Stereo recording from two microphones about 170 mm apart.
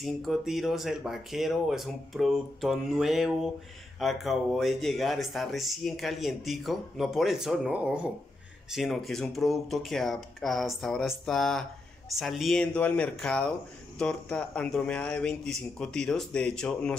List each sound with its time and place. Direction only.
0.0 s speech: centre (ahead or behind)